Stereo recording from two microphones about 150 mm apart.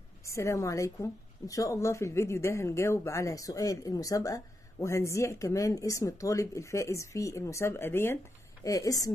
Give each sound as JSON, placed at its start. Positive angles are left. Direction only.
{"t": 0.3, "sound": "a woman's voice", "side_deg": 20}